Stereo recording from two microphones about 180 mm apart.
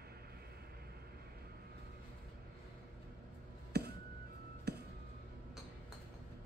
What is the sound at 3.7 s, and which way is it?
Music, 65° right (ahead or behind).